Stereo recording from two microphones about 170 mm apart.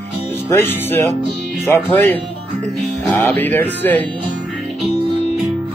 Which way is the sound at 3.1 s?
15° left (ahead or behind).